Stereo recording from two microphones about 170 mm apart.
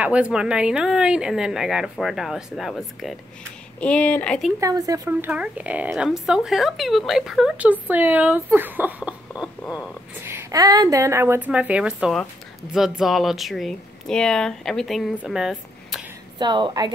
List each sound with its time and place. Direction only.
0.0 s speech: 5° right (ahead or behind)
4.6 s speech: 20° right (ahead or behind)
9.4 s a sound: 5° right (ahead or behind)
10.2 s speech: 20° right (ahead or behind); by 16.0 s centre (ahead or behind)
16.3 s a woman's voice: 25° right (ahead or behind)